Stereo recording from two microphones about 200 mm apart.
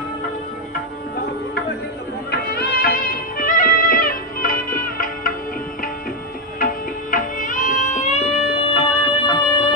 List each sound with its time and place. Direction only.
2.5 s music: 50° left (ahead or behind)
6.6 s music: 40° left (ahead or behind); by 9.7 s 25° left (ahead or behind)